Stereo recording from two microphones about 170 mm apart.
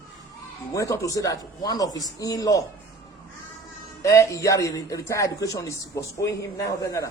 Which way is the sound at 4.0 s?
20° left (ahead or behind).